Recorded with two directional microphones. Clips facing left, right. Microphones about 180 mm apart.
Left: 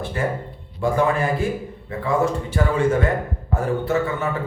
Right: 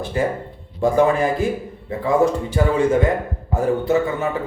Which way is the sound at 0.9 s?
20° right (ahead or behind).